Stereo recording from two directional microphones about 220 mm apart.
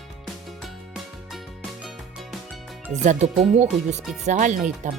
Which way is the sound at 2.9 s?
30° right (ahead or behind).